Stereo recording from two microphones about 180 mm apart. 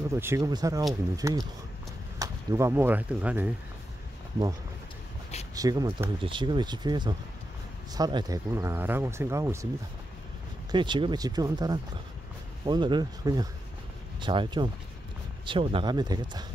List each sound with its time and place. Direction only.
0.1 s speech: 15° right (ahead or behind)
5.5 s speech: 20° right (ahead or behind)
10.7 s speech: 25° right (ahead or behind)